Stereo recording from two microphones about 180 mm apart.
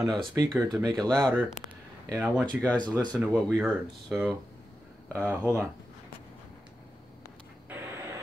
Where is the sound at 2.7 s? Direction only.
5° left (ahead or behind).